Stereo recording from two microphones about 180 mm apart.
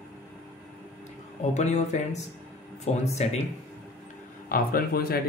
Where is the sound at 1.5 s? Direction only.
40° left (ahead or behind).